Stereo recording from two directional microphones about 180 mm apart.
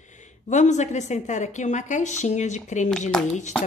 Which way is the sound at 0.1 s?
40° left (ahead or behind).